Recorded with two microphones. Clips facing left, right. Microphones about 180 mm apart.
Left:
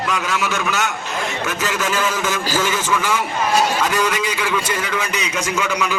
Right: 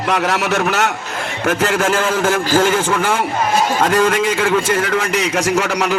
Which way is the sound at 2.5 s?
55° right (ahead or behind).